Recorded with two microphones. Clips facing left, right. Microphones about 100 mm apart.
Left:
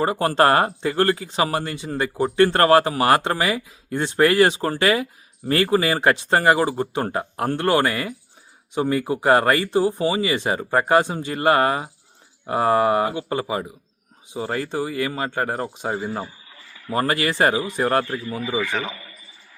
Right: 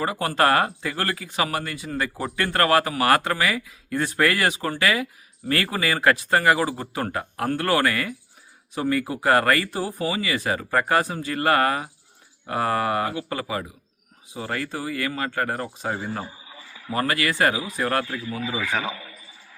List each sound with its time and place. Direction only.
0.0 s speech: 35° left (ahead or behind)
16.5 s a sound: 10° right (ahead or behind)
16.9 s speech: 30° left (ahead or behind)
18.0 s speech: 5° right (ahead or behind)